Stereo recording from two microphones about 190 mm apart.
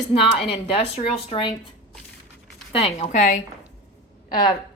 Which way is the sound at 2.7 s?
30° left (ahead or behind).